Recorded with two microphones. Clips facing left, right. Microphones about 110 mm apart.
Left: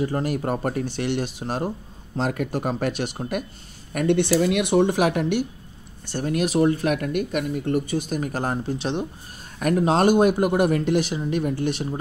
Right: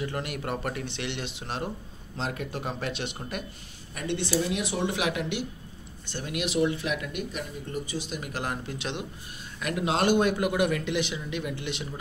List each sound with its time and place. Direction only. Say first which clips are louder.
0.0 s speech: left 8 dB; 35° left (ahead or behind)
3.9 s speech: left 9 dB; 60° left (ahead or behind); by 9.0 s 30° left (ahead or behind)
9.6 s speech: left 8 dB; 45° left (ahead or behind)